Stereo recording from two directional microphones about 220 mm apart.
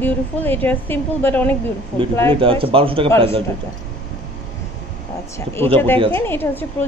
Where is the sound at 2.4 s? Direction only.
25° right (ahead or behind).